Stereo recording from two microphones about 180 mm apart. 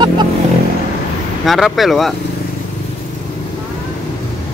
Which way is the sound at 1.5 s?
Centre (ahead or behind).